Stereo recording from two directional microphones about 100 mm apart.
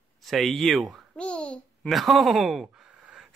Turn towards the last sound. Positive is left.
turn(degrees=-10)  # may be behind; listen again after turning